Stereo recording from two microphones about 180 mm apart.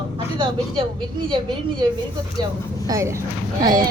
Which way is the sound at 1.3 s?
25° right (ahead or behind).